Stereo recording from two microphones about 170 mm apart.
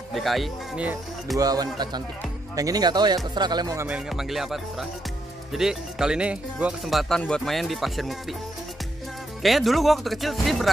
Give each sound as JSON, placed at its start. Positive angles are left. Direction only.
{"t": 0.1, "sound": "speech", "side_deg": 0}
{"t": 1.4, "sound": "speech", "side_deg": -20}
{"t": 3.9, "sound": "speech", "side_deg": 0}
{"t": 9.4, "sound": "speech", "side_deg": 0}